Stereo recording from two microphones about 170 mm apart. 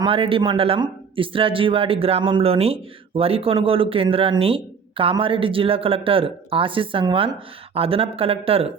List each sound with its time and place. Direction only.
0.0 s speech: 30° right (ahead or behind)